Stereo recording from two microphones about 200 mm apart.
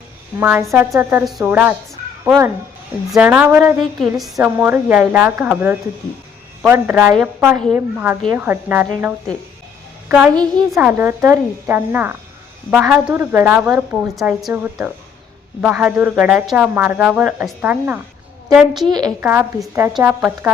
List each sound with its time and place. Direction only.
0.3 s speech: 10° right (ahead or behind)
3.1 s a woman's voice: 5° right (ahead or behind)
18.9 s a woman's voice: 20° right (ahead or behind)
19.2 s speech: 10° right (ahead or behind)